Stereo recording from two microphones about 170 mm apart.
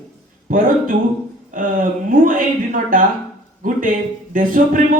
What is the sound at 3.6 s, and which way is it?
Speech, 50° right (ahead or behind).